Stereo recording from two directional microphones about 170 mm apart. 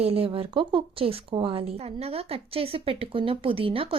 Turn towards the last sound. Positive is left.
turn(degrees=-35)  # may be behind; listen again after turning